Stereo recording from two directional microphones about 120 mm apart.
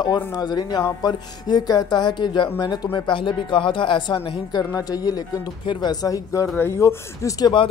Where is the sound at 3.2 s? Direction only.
45° left (ahead or behind).